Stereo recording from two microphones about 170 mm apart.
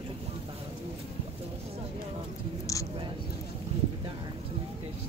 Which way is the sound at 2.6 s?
20° left (ahead or behind).